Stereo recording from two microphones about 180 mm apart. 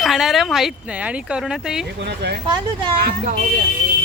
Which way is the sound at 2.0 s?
65° right (ahead or behind).